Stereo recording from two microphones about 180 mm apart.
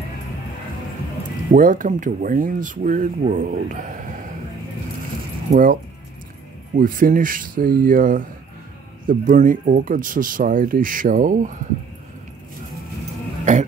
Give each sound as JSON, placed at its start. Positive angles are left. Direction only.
{"t": 1.5, "sound": "speech", "side_deg": -45}
{"t": 5.5, "sound": "speech", "side_deg": -50}
{"t": 13.5, "sound": "speech", "side_deg": -40}